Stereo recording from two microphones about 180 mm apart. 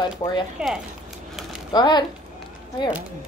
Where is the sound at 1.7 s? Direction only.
25° left (ahead or behind).